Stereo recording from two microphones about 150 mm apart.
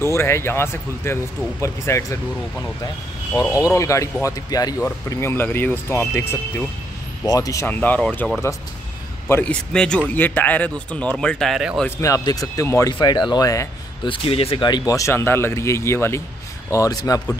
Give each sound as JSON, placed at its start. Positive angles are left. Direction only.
{"t": 0.0, "sound": "speech", "side_deg": 20}
{"t": 3.4, "sound": "speech", "side_deg": 30}
{"t": 9.3, "sound": "speech", "side_deg": 10}
{"t": 12.0, "sound": "speech", "side_deg": 25}
{"t": 14.0, "sound": "speech", "side_deg": 35}